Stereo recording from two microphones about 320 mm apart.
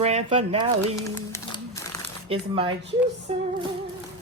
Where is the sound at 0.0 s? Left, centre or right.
Centre.